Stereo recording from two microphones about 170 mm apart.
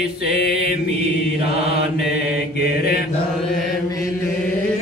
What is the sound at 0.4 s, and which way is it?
Mantra, 70° left (ahead or behind).